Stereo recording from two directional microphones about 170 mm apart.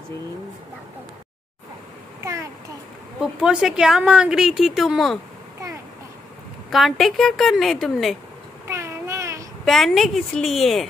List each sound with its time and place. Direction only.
2.2 s a sound: 15° right (ahead or behind)
3.2 s a woman's voice: 5° right (ahead or behind)
6.7 s a woman's voice: centre (ahead or behind)
8.6 s cat: 15° right (ahead or behind)
9.7 s a woman's voice: centre (ahead or behind)